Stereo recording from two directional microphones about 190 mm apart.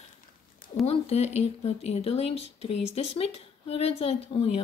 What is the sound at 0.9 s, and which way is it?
Speech, 35° left (ahead or behind).